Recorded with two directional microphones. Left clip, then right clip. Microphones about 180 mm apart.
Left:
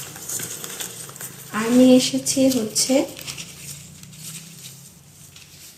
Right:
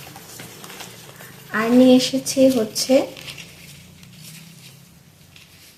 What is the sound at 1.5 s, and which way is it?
Speech, 45° right (ahead or behind).